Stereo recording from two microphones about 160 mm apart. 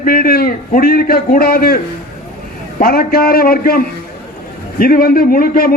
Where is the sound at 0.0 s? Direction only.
65° left (ahead or behind).